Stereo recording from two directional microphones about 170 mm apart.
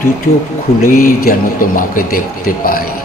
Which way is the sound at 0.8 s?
55° left (ahead or behind).